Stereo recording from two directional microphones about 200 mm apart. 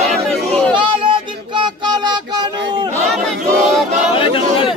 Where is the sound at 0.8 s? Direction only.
25° right (ahead or behind).